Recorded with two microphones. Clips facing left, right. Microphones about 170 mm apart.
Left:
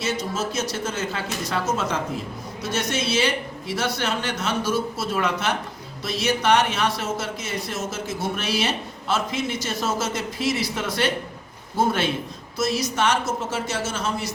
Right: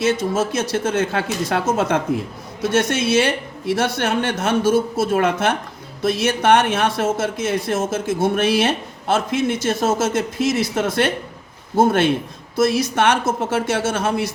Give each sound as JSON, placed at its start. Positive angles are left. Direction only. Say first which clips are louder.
{"t": 0.0, "sound": "a woman's voice", "louder": "right 7 dB", "side_deg": -50}